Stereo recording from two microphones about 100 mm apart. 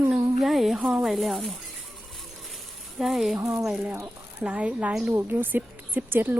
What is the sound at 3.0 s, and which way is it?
Speech, 5° right (ahead or behind).